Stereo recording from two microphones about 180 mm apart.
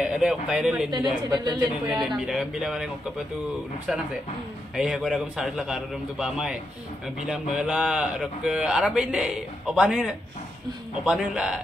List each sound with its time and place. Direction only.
0.0 s speech: 5° right (ahead or behind)
1.3 s speech: 25° right (ahead or behind)
1.9 s speech: centre (ahead or behind)
4.7 s speech: 5° right (ahead or behind)